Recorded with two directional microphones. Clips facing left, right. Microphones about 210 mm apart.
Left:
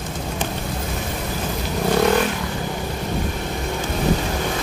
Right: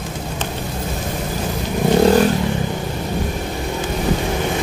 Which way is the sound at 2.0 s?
35° right (ahead or behind).